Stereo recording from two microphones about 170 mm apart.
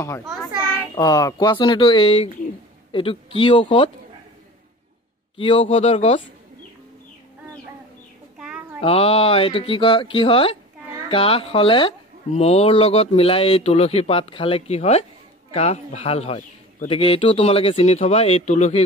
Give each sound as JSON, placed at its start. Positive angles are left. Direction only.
{"t": 0.9, "sound": "speech", "side_deg": 20}
{"t": 5.4, "sound": "speech", "side_deg": 30}
{"t": 8.4, "sound": "a sound", "side_deg": -5}
{"t": 8.8, "sound": "speech", "side_deg": 35}